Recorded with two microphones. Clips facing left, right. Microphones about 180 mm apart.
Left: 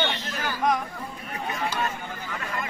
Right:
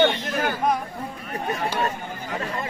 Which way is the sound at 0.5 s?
30° right (ahead or behind).